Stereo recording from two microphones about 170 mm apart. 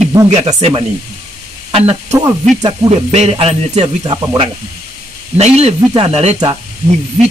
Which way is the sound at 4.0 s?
25° right (ahead or behind).